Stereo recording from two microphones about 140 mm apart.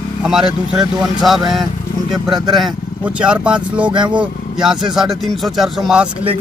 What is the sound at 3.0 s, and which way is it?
A man's voice, 10° right (ahead or behind).